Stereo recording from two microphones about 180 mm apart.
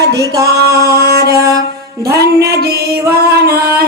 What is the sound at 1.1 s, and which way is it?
Music, 60° right (ahead or behind).